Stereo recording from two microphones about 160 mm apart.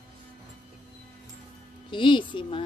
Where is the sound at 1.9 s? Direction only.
30° left (ahead or behind).